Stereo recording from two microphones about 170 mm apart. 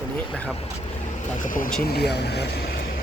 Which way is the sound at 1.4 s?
50° left (ahead or behind).